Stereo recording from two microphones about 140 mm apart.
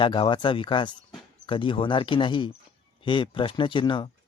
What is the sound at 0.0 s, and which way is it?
Speech, 35° left (ahead or behind).